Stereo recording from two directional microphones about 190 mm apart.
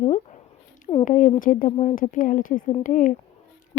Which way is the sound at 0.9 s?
40° left (ahead or behind).